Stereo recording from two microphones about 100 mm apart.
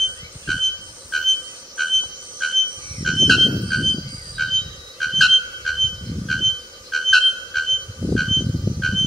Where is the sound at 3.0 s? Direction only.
Centre (ahead or behind).